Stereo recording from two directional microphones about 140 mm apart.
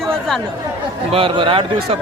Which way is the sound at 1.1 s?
40° right (ahead or behind).